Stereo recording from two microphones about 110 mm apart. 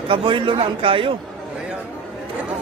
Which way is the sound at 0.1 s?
50° right (ahead or behind).